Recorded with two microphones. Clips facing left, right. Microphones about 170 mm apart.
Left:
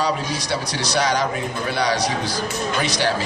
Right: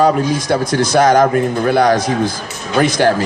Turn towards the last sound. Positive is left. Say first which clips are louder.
# right 9 dB
turn(degrees=-50)  # may be behind; listen again after turning